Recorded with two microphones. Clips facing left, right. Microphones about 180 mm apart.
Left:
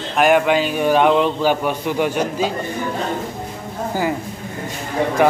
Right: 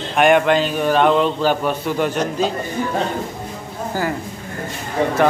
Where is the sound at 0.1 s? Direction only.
5° left (ahead or behind).